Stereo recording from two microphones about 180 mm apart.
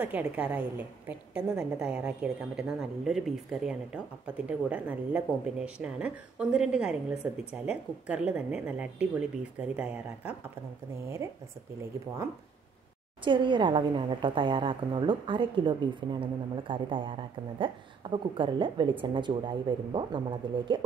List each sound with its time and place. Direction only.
0.0 s a woman's voice: 10° right (ahead or behind)
13.2 s a woman's voice: 25° right (ahead or behind)